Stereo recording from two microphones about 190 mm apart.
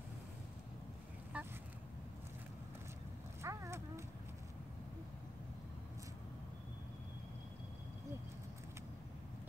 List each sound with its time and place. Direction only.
1.3 s vehicle: 10° right (ahead or behind)
3.4 s horse: 15° right (ahead or behind)